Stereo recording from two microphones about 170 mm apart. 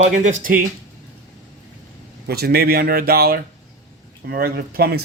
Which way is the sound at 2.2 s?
70° right (ahead or behind).